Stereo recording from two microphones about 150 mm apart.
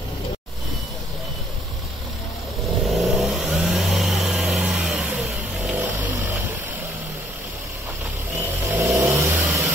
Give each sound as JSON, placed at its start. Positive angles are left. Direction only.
{"t": 2.9, "sound": "vehicle", "side_deg": 0}
{"t": 8.7, "sound": "vehicle", "side_deg": -20}